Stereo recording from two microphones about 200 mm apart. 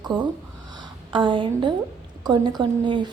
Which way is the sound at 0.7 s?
20° right (ahead or behind).